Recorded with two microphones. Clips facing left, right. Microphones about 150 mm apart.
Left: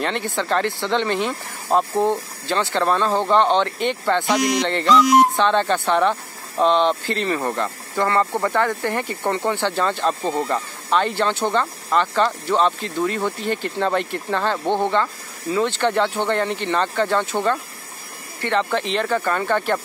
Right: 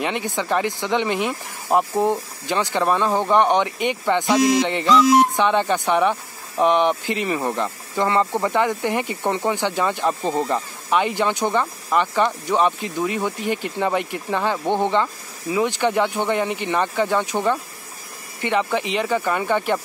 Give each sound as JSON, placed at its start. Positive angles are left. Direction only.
{"t": 0.0, "sound": "speech", "side_deg": -10}